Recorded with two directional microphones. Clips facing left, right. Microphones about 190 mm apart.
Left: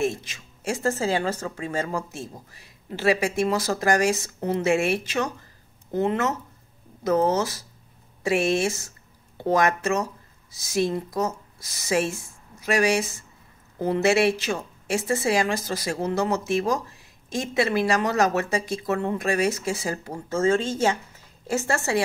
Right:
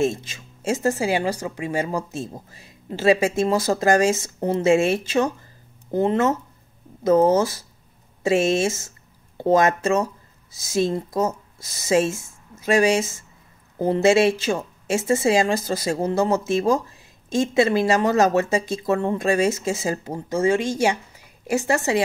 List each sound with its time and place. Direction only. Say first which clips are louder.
0.0 s speech: right 4 dB; 25° right (ahead or behind)